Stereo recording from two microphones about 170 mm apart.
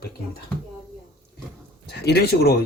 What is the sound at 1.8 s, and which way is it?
Speech, 70° left (ahead or behind).